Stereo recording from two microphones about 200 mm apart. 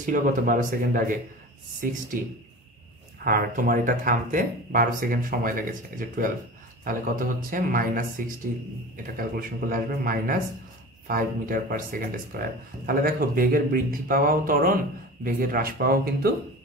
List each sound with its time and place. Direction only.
0.0 s speech: 40° right (ahead or behind)
3.3 s speech: 45° right (ahead or behind)